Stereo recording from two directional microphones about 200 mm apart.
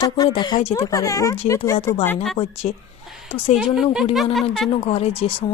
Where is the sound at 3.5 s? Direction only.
Centre (ahead or behind).